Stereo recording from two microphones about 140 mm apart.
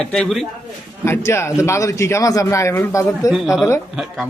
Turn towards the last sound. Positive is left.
turn(degrees=0)  # may be behind; listen again after turning